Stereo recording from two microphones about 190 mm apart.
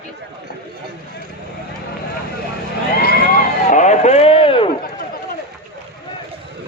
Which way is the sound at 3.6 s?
40° left (ahead or behind).